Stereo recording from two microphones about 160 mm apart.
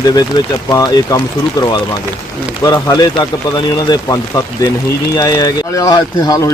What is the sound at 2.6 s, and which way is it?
Speech, 25° left (ahead or behind).